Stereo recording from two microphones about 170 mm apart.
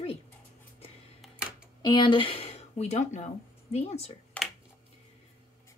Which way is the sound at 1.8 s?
30° left (ahead or behind).